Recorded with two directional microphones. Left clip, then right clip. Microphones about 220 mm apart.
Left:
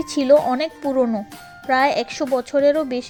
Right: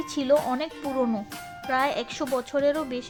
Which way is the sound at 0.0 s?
20° left (ahead or behind).